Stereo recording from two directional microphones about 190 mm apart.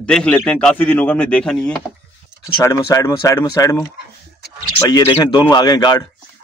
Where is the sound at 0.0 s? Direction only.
5° left (ahead or behind).